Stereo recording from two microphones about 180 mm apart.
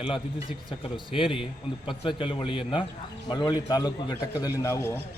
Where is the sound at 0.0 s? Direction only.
30° left (ahead or behind).